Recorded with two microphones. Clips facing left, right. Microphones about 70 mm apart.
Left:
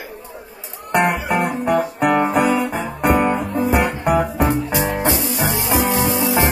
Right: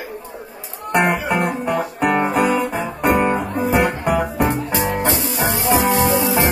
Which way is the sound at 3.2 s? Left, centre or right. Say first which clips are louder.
Even; right.